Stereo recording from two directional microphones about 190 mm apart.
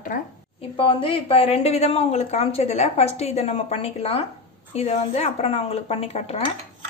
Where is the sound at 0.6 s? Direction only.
30° left (ahead or behind).